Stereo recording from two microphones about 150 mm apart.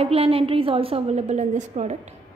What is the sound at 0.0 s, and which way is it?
A woman's voice, 40° right (ahead or behind).